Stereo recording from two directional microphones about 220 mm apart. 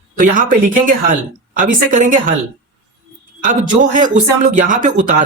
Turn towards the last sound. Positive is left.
turn(degrees=-35)  # may be behind; listen again after turning